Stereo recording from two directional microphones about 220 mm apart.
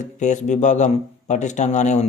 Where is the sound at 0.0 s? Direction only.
35° left (ahead or behind).